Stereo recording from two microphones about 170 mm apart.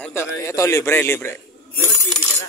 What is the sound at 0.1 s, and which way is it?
Speech, 15° left (ahead or behind).